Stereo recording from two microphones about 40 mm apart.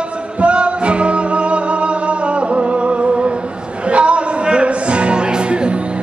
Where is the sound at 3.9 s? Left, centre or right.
Right.